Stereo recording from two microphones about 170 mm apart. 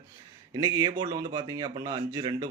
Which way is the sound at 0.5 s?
20° right (ahead or behind).